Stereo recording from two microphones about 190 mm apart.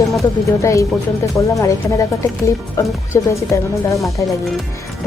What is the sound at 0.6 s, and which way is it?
Speech, 15° left (ahead or behind).